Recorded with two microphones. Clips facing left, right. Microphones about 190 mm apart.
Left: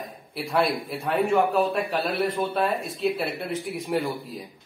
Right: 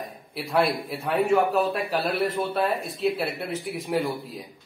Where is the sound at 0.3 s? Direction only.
Centre (ahead or behind).